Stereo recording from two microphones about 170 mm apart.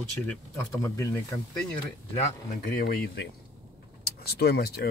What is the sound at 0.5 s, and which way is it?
Speech, 15° left (ahead or behind).